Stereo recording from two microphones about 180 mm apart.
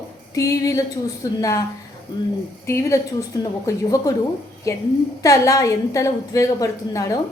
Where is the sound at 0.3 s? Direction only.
20° left (ahead or behind).